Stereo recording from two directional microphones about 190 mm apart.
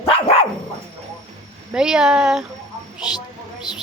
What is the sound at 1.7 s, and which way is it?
Speech, 5° right (ahead or behind).